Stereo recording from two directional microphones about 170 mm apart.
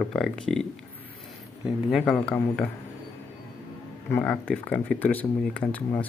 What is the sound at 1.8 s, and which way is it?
Speech, centre (ahead or behind).